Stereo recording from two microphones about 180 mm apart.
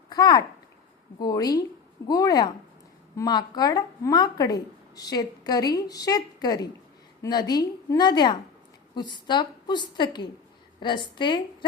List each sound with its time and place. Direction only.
0.1 s a child's voice: 20° left (ahead or behind)